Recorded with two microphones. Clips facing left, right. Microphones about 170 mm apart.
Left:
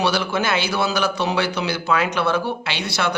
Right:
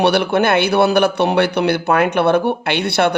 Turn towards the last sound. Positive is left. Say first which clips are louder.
# right 8 dB
turn(degrees=-60)  # may be behind; listen again after turning